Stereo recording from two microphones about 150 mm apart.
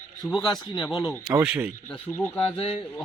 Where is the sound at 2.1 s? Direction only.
15° left (ahead or behind).